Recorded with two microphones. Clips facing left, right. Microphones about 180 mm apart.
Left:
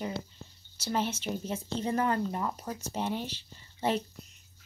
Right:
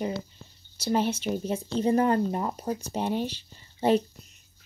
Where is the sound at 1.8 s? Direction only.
30° right (ahead or behind).